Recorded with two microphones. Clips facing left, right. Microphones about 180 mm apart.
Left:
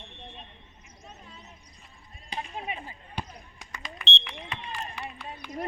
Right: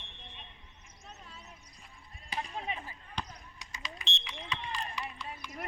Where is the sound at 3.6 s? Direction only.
55° left (ahead or behind).